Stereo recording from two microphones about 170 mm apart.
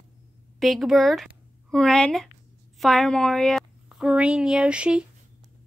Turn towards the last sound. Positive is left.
turn(degrees=-5)  # may be behind; listen again after turning